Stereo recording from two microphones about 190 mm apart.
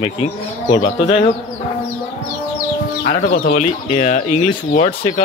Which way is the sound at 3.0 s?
50° left (ahead or behind).